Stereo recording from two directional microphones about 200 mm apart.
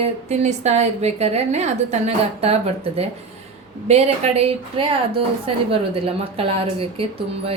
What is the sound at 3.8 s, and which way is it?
A woman's voice, 30° right (ahead or behind).